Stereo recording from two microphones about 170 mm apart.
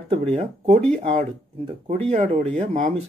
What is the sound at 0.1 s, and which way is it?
Speech, 40° right (ahead or behind).